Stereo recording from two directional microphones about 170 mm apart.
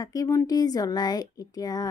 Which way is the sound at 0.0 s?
20° left (ahead or behind).